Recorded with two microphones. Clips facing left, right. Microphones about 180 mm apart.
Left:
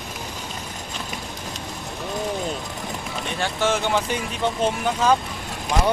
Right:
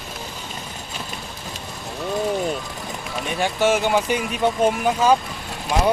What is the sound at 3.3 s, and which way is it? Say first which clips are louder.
Speech: right 4 dB; 15° right (ahead or behind).